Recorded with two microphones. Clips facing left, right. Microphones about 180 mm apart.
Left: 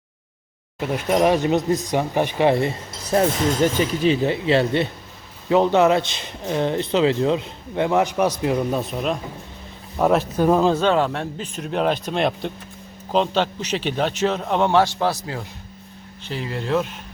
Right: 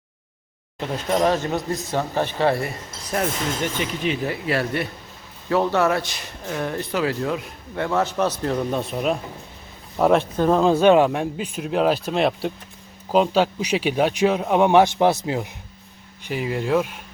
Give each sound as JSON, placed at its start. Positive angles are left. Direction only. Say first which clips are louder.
{"t": 0.8, "sound": "speech", "louder": "left 2 dB", "side_deg": 10}
{"t": 10.7, "sound": "a man's voice", "louder": "right 4 dB", "side_deg": -15}